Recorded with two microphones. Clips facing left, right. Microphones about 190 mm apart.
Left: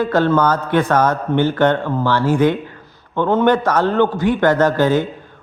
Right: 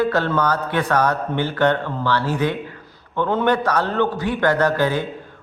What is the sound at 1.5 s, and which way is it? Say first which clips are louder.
A man's voice: left 3 dB; 45° left (ahead or behind).